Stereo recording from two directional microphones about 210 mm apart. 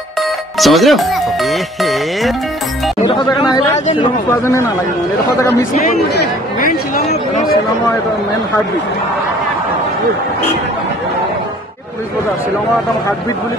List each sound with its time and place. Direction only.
0.6 s speech: centre (ahead or behind)
3.1 s speech: 20° left (ahead or behind)
3.7 s speech: 30° left (ahead or behind)
4.3 s speech: 15° left (ahead or behind)